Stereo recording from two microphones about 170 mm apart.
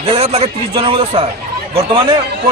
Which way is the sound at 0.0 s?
35° right (ahead or behind).